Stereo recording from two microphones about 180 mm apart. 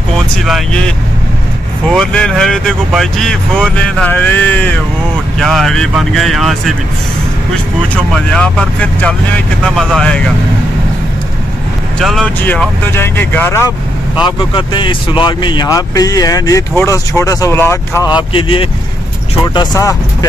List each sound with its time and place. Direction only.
0.5 s speech: centre (ahead or behind)
7.9 s speech: 5° left (ahead or behind)
12.0 s speech: centre (ahead or behind)
12.4 s speech: 10° left (ahead or behind)
14.2 s speech: 25° left (ahead or behind)